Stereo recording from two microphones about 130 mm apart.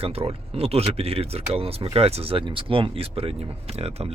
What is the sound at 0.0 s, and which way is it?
Speech, 50° right (ahead or behind).